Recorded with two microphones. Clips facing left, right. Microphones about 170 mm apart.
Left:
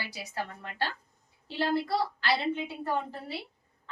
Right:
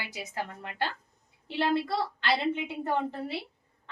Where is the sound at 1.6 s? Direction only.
70° right (ahead or behind).